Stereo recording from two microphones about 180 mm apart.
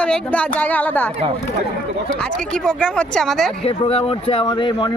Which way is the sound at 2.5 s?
5° left (ahead or behind).